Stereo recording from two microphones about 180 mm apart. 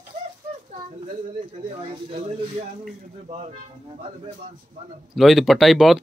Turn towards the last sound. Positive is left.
turn(degrees=0)  # may be behind; listen again after turning